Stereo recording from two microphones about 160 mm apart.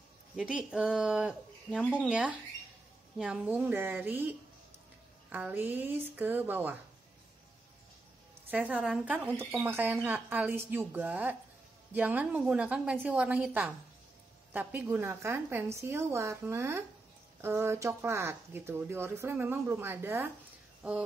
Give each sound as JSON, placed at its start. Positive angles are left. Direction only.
{"t": 0.4, "sound": "speech", "side_deg": -5}
{"t": 8.5, "sound": "speech", "side_deg": -10}